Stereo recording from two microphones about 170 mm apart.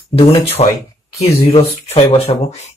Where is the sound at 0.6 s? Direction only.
35° left (ahead or behind).